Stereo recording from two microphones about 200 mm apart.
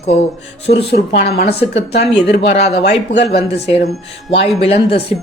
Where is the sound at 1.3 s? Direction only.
55° left (ahead or behind).